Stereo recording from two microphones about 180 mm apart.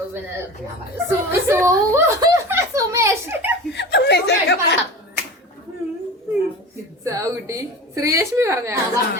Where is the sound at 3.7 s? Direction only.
70° left (ahead or behind).